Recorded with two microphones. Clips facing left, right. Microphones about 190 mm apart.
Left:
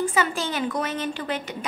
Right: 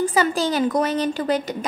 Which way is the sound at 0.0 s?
35° right (ahead or behind).